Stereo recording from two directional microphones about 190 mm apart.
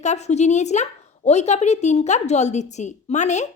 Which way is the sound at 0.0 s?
35° left (ahead or behind).